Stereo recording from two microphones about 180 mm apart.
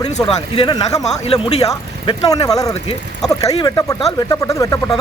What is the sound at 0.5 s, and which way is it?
Speech, 25° left (ahead or behind).